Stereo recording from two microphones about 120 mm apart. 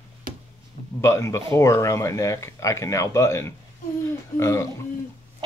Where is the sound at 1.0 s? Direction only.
25° left (ahead or behind).